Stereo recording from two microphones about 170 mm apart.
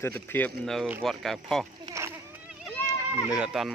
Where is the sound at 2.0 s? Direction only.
20° right (ahead or behind).